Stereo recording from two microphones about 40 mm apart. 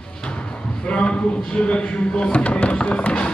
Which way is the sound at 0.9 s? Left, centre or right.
Left.